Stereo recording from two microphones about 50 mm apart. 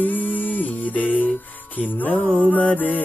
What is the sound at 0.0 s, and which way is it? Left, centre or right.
Music, left.